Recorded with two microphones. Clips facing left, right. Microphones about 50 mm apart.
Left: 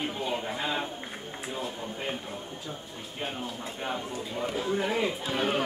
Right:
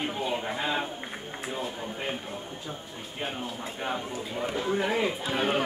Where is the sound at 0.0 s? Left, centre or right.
Centre.